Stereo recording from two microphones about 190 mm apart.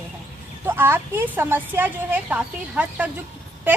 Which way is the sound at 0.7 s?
10° right (ahead or behind).